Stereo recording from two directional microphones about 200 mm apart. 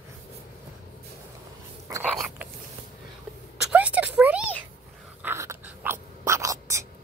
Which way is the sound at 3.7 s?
5° right (ahead or behind).